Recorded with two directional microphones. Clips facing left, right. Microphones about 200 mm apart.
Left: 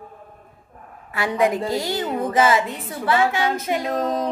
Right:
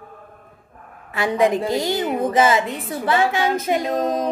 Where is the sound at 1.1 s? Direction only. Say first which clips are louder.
Right 2 dB; 20° right (ahead or behind).